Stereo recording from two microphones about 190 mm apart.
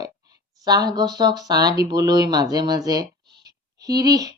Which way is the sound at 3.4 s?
20° right (ahead or behind).